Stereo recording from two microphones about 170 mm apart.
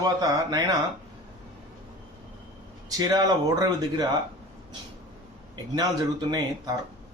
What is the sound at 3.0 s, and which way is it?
Speech, 20° right (ahead or behind).